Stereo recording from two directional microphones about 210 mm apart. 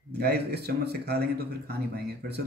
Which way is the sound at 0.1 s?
50° right (ahead or behind).